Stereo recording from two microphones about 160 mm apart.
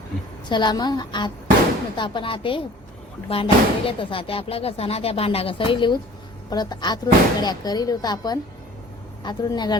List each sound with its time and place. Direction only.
0.4 s speech: 30° left (ahead or behind)